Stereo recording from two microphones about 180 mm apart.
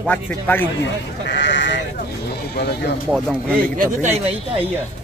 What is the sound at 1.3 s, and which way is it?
Sheep, 80° left.